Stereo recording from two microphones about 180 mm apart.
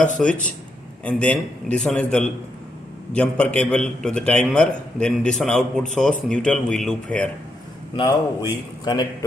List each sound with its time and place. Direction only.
0.2 s a man's voice: 5° left (ahead or behind)
7.9 s a man's voice: 25° left (ahead or behind)